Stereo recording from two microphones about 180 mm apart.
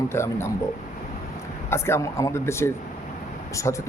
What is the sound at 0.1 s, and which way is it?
Speech, 15° left (ahead or behind).